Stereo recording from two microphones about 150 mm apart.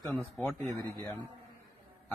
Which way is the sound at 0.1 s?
10° left (ahead or behind).